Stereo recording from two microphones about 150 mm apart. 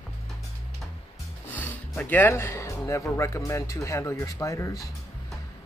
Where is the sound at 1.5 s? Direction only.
10° left (ahead or behind).